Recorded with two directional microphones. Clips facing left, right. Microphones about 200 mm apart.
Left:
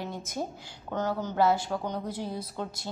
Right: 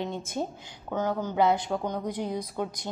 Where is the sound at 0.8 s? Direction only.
10° right (ahead or behind).